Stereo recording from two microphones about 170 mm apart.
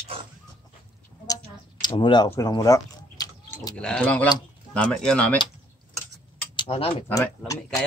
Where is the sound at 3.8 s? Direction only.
5° left (ahead or behind).